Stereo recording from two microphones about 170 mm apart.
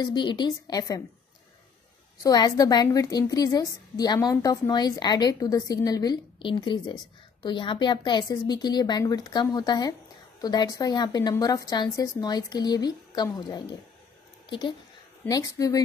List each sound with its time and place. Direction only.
0.0 s a woman's voice: 25° left (ahead or behind)
2.2 s a woman's voice: 20° left (ahead or behind)